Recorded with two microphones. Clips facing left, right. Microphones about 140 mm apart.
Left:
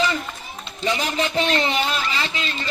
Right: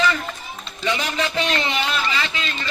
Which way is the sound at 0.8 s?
35° left (ahead or behind).